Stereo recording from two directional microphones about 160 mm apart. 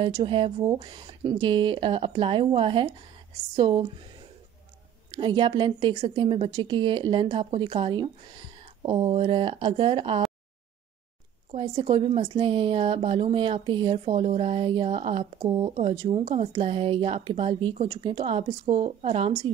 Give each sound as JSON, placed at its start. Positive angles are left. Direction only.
{"t": 0.0, "sound": "a woman's voice", "side_deg": -35}
{"t": 5.1, "sound": "a woman's voice", "side_deg": -30}
{"t": 11.5, "sound": "a woman's voice", "side_deg": -40}